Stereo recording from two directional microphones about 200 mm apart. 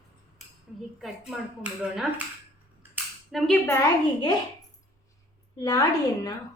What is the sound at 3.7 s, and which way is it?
Speech, 15° left (ahead or behind).